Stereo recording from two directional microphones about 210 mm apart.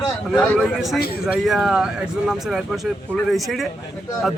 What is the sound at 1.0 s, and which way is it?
Speech, 45° left (ahead or behind).